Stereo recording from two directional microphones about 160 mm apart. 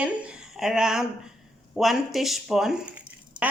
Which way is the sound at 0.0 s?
5° right (ahead or behind).